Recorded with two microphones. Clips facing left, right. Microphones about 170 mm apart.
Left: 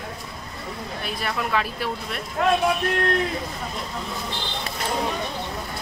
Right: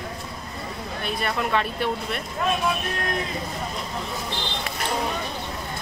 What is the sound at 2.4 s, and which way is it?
Speech, 75° left (ahead or behind).